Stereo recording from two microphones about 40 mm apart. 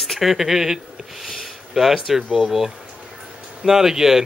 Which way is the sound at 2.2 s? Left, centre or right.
Centre.